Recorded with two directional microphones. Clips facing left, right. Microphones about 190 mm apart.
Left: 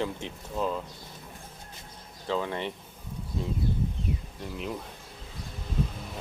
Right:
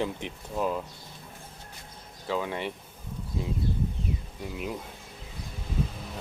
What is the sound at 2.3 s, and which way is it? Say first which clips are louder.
Speech: even; 10° right (ahead or behind).